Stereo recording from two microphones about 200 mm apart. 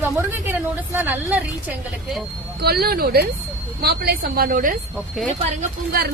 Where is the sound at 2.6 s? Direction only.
50° right (ahead or behind).